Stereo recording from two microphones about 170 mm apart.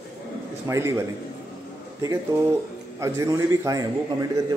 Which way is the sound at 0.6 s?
15° right (ahead or behind).